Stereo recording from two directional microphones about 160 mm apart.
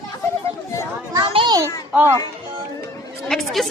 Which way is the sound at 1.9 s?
10° right (ahead or behind).